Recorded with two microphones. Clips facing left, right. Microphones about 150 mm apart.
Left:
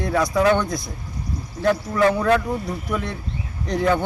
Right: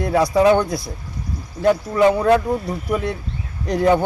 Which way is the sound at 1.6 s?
15° right (ahead or behind).